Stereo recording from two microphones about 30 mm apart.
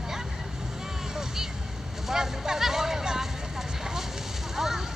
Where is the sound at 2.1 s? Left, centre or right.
Centre.